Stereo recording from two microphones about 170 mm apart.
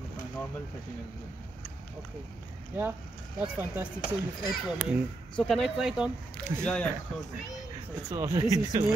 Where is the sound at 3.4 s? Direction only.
10° right (ahead or behind).